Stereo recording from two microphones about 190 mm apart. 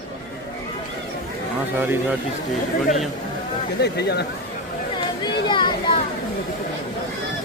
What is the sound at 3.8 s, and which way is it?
Speech, 60° left (ahead or behind).